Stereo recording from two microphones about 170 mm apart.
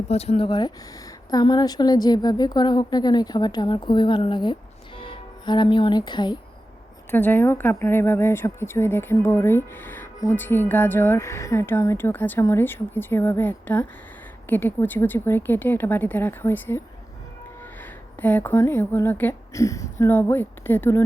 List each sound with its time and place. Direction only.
0.1 s a woman's voice: 35° left (ahead or behind)
7.1 s speech: 10° left (ahead or behind)
18.2 s speech: 10° left (ahead or behind)